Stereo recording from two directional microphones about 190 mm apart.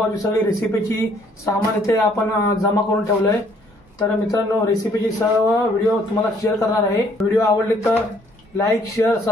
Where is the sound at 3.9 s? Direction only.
15° left (ahead or behind).